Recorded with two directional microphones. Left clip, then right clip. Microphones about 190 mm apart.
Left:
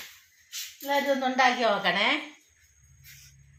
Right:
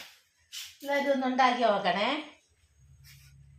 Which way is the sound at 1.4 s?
25° left (ahead or behind).